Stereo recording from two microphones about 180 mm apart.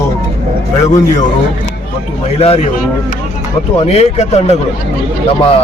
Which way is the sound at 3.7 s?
35° left (ahead or behind).